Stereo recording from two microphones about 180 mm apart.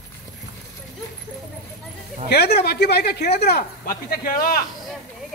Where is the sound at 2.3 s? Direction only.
65° left (ahead or behind).